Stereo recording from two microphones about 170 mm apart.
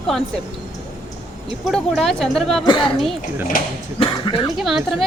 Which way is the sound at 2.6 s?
30° left (ahead or behind).